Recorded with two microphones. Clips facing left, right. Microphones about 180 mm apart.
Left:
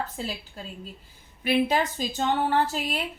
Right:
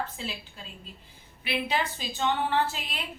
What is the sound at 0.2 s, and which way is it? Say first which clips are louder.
A woman's voice: left 4 dB; 40° left (ahead or behind).